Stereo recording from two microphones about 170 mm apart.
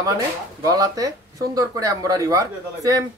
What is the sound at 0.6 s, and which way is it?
Speech, 20° right (ahead or behind).